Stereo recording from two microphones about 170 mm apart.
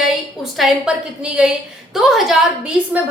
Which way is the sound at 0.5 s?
5° right (ahead or behind).